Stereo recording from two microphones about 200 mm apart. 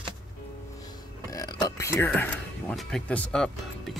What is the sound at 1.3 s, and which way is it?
Music, 20° left (ahead or behind).